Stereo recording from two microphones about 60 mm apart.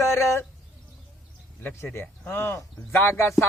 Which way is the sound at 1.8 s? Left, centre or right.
Left.